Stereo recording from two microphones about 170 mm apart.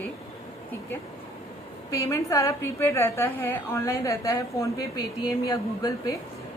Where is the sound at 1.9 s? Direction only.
20° left (ahead or behind).